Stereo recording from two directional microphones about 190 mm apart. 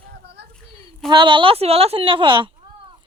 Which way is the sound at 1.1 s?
25° right (ahead or behind).